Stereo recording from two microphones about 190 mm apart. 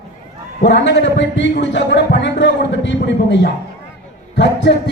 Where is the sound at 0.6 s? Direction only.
65° left (ahead or behind).